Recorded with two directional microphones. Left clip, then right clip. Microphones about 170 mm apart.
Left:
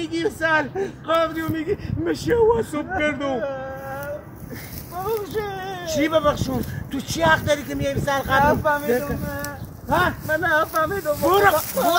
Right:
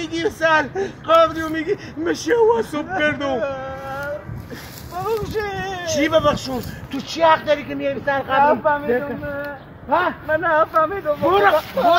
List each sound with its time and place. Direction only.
0.0 s speech: centre (ahead or behind)
8.5 s speech: 35° left (ahead or behind)
8.8 s a sound: 15° left (ahead or behind)
10.3 s speech: 25° left (ahead or behind); by 11.9 s 5° left (ahead or behind)